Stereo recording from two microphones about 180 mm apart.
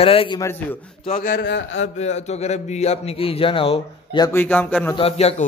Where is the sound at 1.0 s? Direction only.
45° left (ahead or behind).